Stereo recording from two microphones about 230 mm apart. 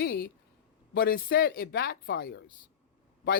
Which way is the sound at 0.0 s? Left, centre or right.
Left.